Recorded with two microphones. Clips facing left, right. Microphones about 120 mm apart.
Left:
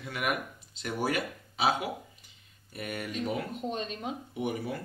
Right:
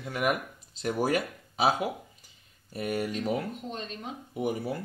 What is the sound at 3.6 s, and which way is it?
Speech, 15° left (ahead or behind).